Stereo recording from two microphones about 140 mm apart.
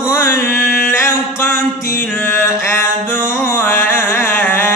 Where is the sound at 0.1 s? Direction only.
20° left (ahead or behind).